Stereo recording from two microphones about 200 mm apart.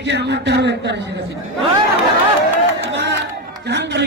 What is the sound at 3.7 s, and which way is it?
Speech, 60° right (ahead or behind).